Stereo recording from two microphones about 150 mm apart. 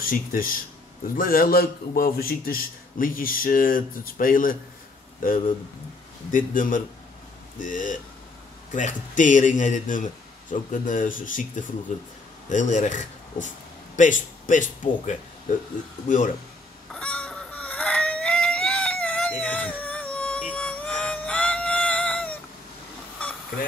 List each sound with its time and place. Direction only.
0.0 s a man's voice: 70° left (ahead or behind)
16.9 s fowl: 5° left (ahead or behind)
20.5 s music: 10° left (ahead or behind)